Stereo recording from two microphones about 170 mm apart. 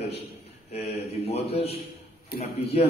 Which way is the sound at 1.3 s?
35° left (ahead or behind).